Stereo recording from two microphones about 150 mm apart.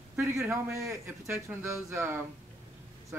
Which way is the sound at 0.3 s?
20° right (ahead or behind).